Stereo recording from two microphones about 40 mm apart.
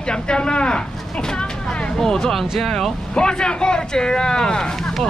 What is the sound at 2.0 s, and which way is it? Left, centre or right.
Speech, centre.